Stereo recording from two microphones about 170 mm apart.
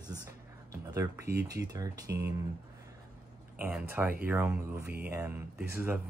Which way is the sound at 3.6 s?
10° right (ahead or behind).